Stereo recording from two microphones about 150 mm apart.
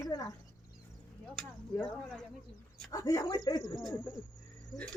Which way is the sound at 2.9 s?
20° left (ahead or behind).